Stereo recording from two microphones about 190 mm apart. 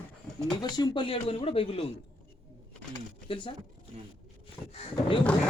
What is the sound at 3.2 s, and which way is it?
Speech, 25° left (ahead or behind).